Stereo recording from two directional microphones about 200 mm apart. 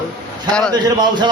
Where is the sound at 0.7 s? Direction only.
20° right (ahead or behind).